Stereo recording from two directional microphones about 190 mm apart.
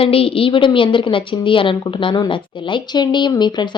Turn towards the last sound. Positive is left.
turn(degrees=20)  # may be behind; listen again after turning